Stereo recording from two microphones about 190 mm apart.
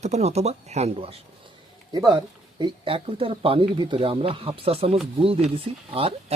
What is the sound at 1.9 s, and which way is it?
Speech, 20° right (ahead or behind).